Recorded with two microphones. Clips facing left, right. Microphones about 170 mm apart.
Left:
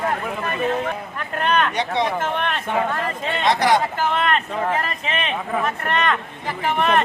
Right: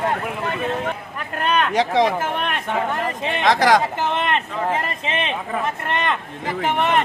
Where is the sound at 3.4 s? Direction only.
90° right.